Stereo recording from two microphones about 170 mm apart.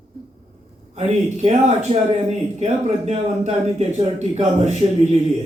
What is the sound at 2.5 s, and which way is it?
A man's voice, 40° right (ahead or behind).